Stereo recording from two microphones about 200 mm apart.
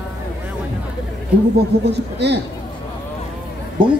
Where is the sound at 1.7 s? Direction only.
55° right (ahead or behind).